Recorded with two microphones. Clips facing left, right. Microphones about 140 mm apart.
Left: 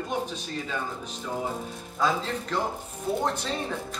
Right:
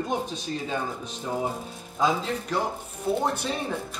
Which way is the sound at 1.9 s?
15° right (ahead or behind).